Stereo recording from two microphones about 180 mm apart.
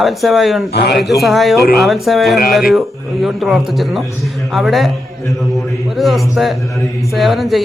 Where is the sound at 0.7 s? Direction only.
65° left (ahead or behind).